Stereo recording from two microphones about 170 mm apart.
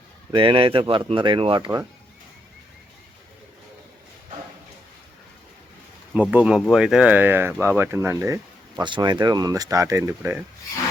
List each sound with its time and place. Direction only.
0.3 s speech: 30° right (ahead or behind)
6.1 s speech: 5° right (ahead or behind)